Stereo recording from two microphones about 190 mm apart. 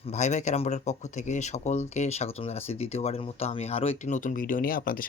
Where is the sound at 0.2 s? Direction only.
40° left (ahead or behind).